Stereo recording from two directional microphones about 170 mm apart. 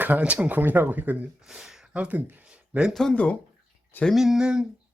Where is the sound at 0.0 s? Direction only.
10° right (ahead or behind).